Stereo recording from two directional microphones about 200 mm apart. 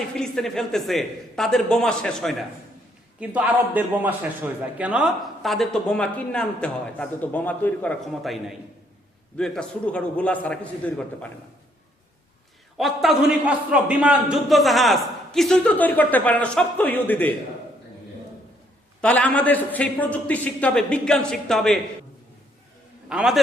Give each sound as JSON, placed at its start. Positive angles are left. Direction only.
{"t": 0.2, "sound": "a man's voice", "side_deg": 0}
{"t": 3.2, "sound": "a man's voice", "side_deg": -5}
{"t": 12.7, "sound": "a man's voice", "side_deg": 0}
{"t": 19.0, "sound": "a man's voice", "side_deg": 5}
{"t": 23.0, "sound": "a man's voice", "side_deg": -5}